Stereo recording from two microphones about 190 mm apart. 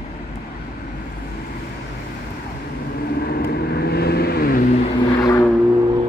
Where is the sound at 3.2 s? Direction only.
55° left (ahead or behind).